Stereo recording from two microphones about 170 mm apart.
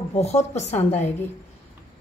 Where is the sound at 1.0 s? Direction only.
10° left (ahead or behind).